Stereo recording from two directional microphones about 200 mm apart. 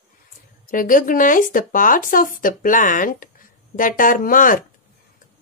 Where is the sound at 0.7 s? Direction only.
45° left (ahead or behind).